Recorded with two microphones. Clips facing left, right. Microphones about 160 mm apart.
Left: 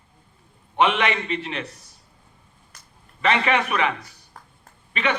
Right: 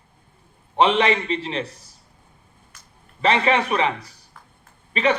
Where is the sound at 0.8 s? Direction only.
30° right (ahead or behind).